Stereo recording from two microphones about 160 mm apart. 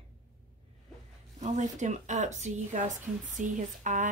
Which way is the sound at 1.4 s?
50° right (ahead or behind).